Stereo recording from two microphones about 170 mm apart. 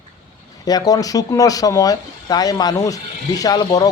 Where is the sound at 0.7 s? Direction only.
20° left (ahead or behind).